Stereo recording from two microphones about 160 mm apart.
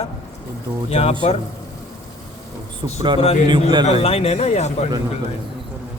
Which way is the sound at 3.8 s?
40° left (ahead or behind).